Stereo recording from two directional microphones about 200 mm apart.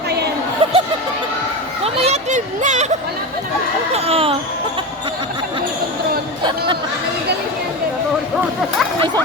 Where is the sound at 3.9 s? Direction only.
30° right (ahead or behind).